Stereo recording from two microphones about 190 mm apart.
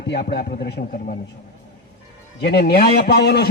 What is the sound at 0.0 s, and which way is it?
A man's voice, 60° left (ahead or behind).